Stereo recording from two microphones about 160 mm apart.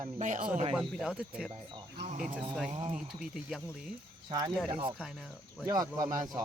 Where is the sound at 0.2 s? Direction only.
50° right (ahead or behind).